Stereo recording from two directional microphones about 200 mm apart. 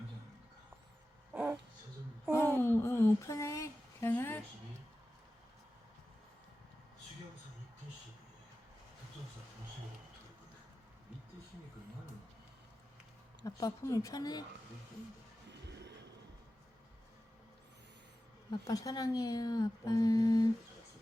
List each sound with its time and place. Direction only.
1.3 s dog: 10° right (ahead or behind)
2.3 s a sound: 15° left (ahead or behind)
13.4 s speech: 15° left (ahead or behind)
18.5 s speech: 15° left (ahead or behind)